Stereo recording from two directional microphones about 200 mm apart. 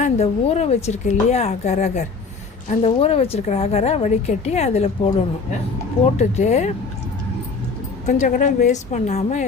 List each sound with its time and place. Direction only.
0.0 s a woman's voice: 35° left (ahead or behind)
8.0 s a woman's voice: 40° left (ahead or behind)